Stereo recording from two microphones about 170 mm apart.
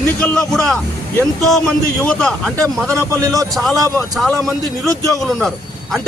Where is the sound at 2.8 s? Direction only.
20° right (ahead or behind).